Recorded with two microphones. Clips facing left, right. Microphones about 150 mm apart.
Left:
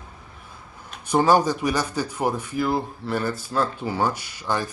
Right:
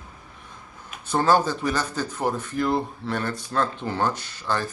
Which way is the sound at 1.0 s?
15° left (ahead or behind).